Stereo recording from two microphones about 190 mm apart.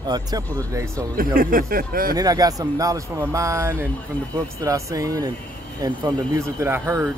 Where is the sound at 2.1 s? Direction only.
20° right (ahead or behind).